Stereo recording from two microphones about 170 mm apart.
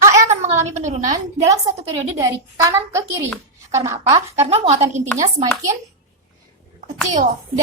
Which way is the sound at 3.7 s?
20° right (ahead or behind).